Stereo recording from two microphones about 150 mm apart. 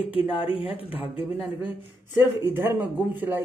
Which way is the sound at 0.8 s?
10° right (ahead or behind).